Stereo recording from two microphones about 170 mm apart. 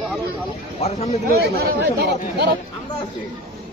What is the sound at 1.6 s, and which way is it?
Speech, 70° right (ahead or behind).